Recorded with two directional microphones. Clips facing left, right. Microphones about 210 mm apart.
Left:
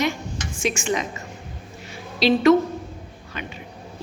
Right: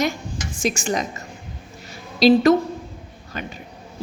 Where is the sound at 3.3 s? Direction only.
40° right (ahead or behind).